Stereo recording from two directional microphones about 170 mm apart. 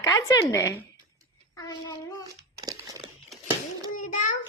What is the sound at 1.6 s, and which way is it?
Child singing, 20° left (ahead or behind).